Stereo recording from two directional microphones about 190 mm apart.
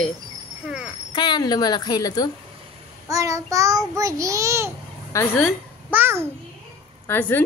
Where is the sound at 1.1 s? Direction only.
20° left (ahead or behind).